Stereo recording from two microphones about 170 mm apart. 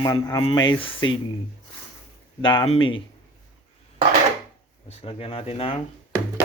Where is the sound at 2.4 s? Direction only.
30° left (ahead or behind).